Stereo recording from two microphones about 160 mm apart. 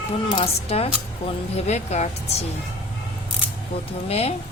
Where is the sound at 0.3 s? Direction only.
35° left (ahead or behind).